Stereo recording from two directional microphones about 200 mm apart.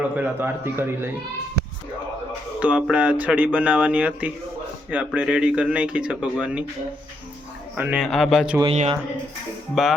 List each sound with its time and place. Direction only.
0.2 s speech: 10° right (ahead or behind)
2.6 s speech: 5° right (ahead or behind)
7.8 s speech: 5° right (ahead or behind)
8.7 s speech: 30° right (ahead or behind)
9.8 s speech: centre (ahead or behind)